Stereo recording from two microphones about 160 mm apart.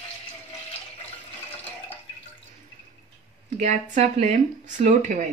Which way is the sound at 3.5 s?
50° right (ahead or behind).